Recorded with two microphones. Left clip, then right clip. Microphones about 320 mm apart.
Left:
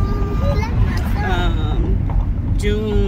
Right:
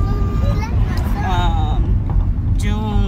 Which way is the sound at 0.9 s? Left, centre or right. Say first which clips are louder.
Right 2 dB; centre.